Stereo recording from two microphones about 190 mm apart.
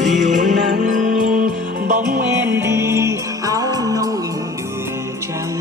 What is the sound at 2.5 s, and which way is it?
Music, 15° right (ahead or behind).